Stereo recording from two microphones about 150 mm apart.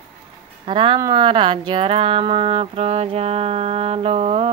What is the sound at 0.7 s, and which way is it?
Speech, 35° right (ahead or behind).